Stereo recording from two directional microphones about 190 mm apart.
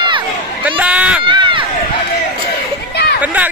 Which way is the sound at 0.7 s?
5° right (ahead or behind).